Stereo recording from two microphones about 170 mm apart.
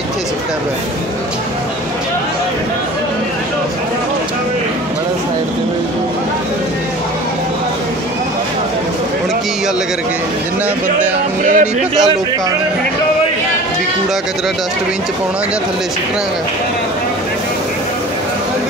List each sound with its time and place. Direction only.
11.4 s speech: 50° right (ahead or behind)